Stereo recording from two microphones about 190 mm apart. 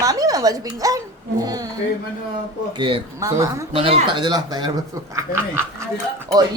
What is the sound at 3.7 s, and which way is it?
Speech, 30° right (ahead or behind).